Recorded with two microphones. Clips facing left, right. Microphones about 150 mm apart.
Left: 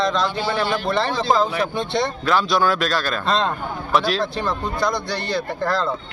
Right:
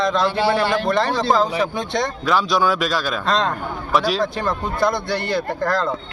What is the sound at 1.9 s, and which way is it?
Speech, centre (ahead or behind).